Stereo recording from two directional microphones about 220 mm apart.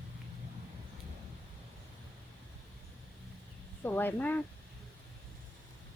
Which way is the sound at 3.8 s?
10° left (ahead or behind).